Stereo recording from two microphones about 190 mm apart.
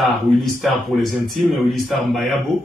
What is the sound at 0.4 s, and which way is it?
Speech, centre (ahead or behind).